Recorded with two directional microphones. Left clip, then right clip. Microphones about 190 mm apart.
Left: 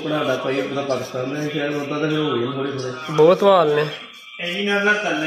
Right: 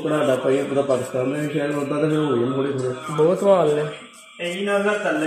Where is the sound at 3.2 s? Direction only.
5° left (ahead or behind).